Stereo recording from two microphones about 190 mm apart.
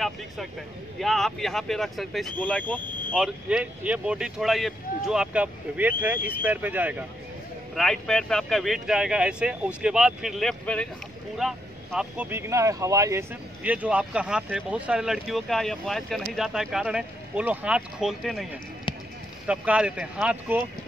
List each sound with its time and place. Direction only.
0.9 s speech: centre (ahead or behind)
3.4 s speech: 5° right (ahead or behind)
7.7 s speech: centre (ahead or behind)